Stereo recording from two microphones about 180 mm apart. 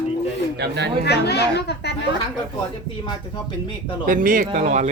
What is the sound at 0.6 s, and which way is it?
Speech, 65° right (ahead or behind).